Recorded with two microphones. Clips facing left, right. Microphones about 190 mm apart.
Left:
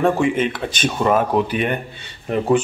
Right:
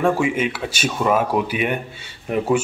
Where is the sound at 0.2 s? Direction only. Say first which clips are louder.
Left 2 dB; 5° right (ahead or behind).